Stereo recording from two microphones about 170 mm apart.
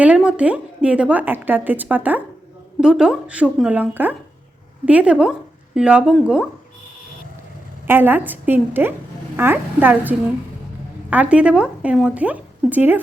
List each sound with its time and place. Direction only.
0.0 s a woman's voice: 5° right (ahead or behind)
7.9 s a woman's voice: 10° right (ahead or behind)